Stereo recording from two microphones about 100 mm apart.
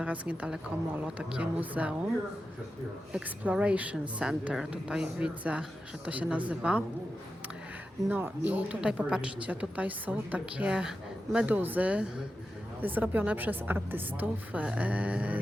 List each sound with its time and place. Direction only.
0.0 s a woman's voice: 15° right (ahead or behind)
3.1 s a woman's voice: 10° right (ahead or behind)
8.1 s a woman's voice: 15° right (ahead or behind)